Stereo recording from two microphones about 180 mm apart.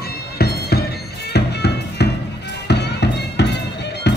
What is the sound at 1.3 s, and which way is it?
Music, 65° left (ahead or behind).